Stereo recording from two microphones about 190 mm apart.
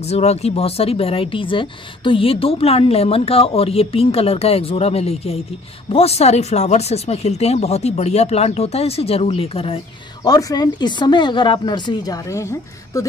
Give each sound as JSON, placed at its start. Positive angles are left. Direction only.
{"t": 0.0, "sound": "speech", "side_deg": 35}
{"t": 10.2, "sound": "speech", "side_deg": 20}